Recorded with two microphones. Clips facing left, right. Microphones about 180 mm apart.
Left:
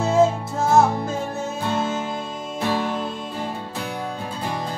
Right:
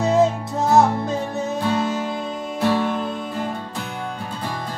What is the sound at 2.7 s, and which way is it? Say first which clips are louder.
Music: right 2 dB; 10° left (ahead or behind).